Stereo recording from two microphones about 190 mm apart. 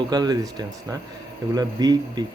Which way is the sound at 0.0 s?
20° right (ahead or behind).